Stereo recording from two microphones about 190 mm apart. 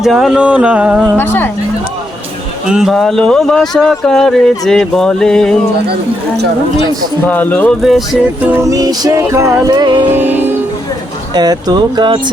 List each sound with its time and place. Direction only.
0.0 s speech: centre (ahead or behind)
1.1 s speech: 10° left (ahead or behind)
2.6 s speech: 5° right (ahead or behind)
7.3 s speech: 10° left (ahead or behind)
7.8 s music: centre (ahead or behind); by 10.1 s 20° right (ahead or behind)
10.1 s music: 10° right (ahead or behind)
11.3 s speech: 20° right (ahead or behind)